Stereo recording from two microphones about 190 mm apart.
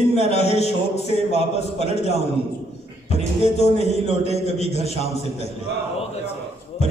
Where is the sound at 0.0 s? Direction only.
35° left (ahead or behind).